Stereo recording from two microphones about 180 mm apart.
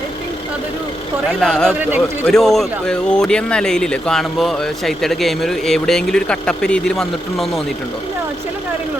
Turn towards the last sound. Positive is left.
turn(degrees=0)  # may be behind; listen again after turning